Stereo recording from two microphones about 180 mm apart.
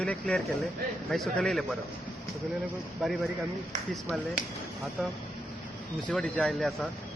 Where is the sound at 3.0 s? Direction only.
Centre (ahead or behind).